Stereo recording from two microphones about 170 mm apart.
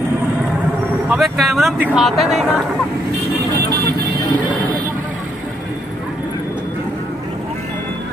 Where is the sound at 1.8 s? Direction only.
5° right (ahead or behind).